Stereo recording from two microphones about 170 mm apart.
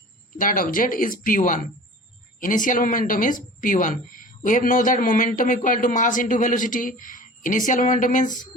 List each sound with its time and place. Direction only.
0.3 s speech: 55° left (ahead or behind)